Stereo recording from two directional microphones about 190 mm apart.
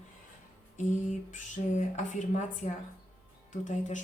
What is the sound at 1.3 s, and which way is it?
Speech, 40° left (ahead or behind).